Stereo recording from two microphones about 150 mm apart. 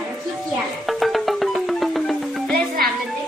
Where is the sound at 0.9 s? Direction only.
Centre (ahead or behind).